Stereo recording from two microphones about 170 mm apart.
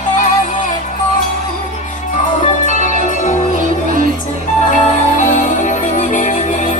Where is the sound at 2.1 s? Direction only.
45° left (ahead or behind).